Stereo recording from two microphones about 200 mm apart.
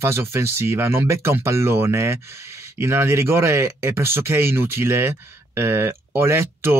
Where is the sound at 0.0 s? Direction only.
10° right (ahead or behind).